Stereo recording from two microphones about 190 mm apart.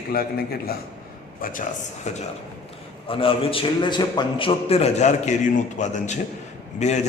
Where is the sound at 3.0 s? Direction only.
30° left (ahead or behind).